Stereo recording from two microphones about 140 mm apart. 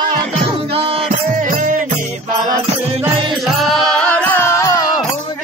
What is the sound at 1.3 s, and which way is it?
Music, 70° right (ahead or behind).